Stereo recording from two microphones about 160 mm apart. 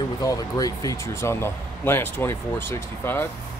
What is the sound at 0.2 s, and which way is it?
Speech, 20° left (ahead or behind).